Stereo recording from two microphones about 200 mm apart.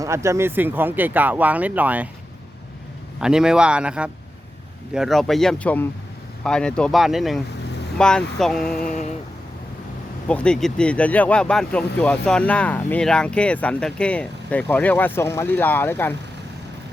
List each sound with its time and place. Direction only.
0.0 s speech: 15° right (ahead or behind)
3.2 s speech: 5° right (ahead or behind)
8.9 s a sound: 35° left (ahead or behind)
10.2 s speech: 5° left (ahead or behind)